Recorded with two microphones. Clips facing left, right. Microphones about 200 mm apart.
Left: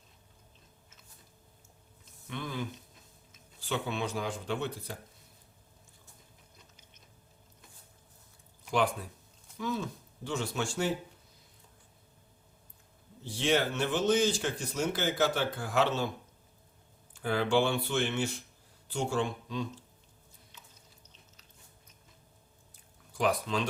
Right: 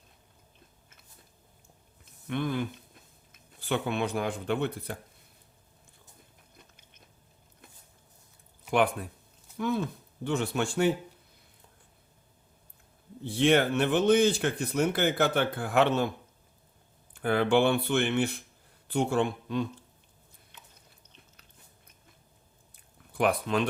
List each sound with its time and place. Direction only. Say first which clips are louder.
2.2 s speech: right 7 dB; 60° right (ahead or behind)
8.7 s speech: right 4 dB; 60° right (ahead or behind)
13.2 s speech: right 5 dB; 60° right (ahead or behind)
17.2 s speech: right 4 dB; 55° right (ahead or behind)
20.5 s chewing: right 2 dB; 60° right (ahead or behind)
23.1 s speech: right 3 dB; 60° right (ahead or behind)